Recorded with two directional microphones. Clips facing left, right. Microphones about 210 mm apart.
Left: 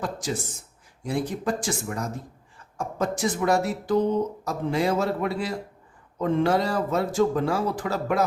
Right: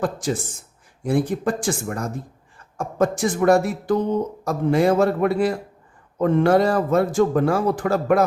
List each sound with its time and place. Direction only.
0.0 s a man's voice: 55° right (ahead or behind)